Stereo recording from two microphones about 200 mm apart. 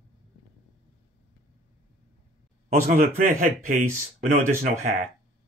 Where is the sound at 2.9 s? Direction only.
40° right (ahead or behind).